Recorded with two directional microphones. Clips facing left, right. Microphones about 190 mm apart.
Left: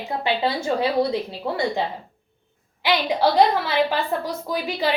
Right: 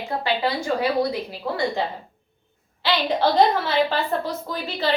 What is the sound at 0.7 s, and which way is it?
Speech, 20° left (ahead or behind).